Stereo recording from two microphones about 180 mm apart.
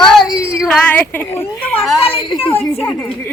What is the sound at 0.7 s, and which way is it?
A woman's voice, 10° left (ahead or behind).